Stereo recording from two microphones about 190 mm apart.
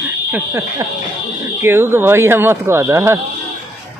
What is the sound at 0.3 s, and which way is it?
A man's voice, 15° right (ahead or behind).